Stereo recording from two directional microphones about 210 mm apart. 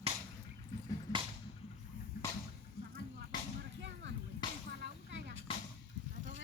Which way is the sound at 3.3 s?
20° left (ahead or behind).